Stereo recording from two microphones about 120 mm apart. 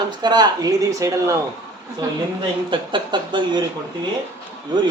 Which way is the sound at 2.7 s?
40° right (ahead or behind).